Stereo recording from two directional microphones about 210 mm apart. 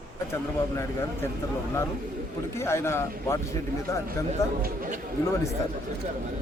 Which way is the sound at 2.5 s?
10° left (ahead or behind).